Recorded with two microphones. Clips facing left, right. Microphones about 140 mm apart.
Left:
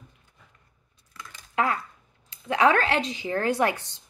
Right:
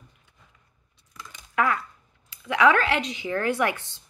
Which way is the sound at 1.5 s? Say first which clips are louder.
Right 1 dB; 25° left (ahead or behind).